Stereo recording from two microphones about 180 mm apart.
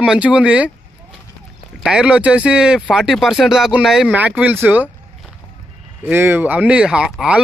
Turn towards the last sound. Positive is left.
turn(degrees=-5)  # may be behind; listen again after turning